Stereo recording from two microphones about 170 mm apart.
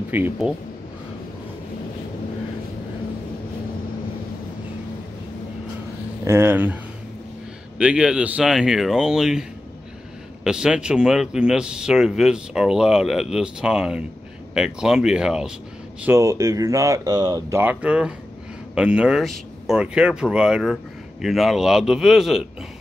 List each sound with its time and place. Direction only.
0.1 s speech: 10° right (ahead or behind)
6.2 s speech: 15° right (ahead or behind)
16.0 s a man's voice: 15° right (ahead or behind)